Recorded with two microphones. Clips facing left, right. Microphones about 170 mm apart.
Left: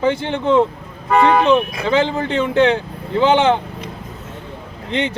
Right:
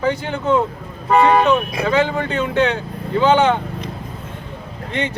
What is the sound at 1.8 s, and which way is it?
Speech, 20° left (ahead or behind).